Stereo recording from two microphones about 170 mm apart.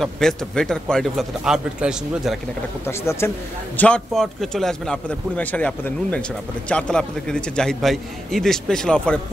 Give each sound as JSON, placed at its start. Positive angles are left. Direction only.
{"t": 0.0, "sound": "a man's voice", "side_deg": 5}
{"t": 2.9, "sound": "a man's voice", "side_deg": 15}